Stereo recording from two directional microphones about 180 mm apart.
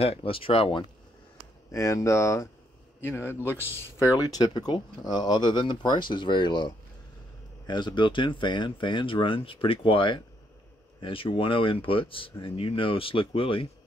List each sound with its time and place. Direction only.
0.0 s speech: 30° left (ahead or behind)
1.7 s speech: 15° left (ahead or behind)